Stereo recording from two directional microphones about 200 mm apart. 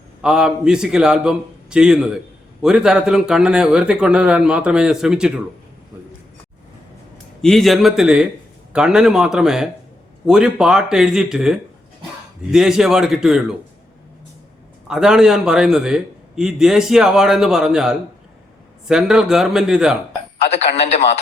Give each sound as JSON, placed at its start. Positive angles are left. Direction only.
{"t": 0.2, "sound": "a man's voice", "side_deg": -5}
{"t": 7.4, "sound": "a man's voice", "side_deg": 0}
{"t": 14.8, "sound": "a man's voice", "side_deg": -5}
{"t": 20.4, "sound": "speech", "side_deg": 30}